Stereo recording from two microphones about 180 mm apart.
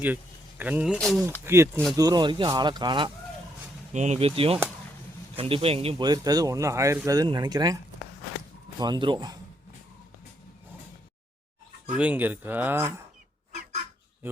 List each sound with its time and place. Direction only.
0.6 s speech: 10° right (ahead or behind)
0.9 s speech: 5° left (ahead or behind)
1.5 s speech: 15° right (ahead or behind)
3.9 s speech: 40° right (ahead or behind)
6.1 s speech: 20° right (ahead or behind)
8.8 s speech: 25° right (ahead or behind)
11.9 s speech: 10° right (ahead or behind)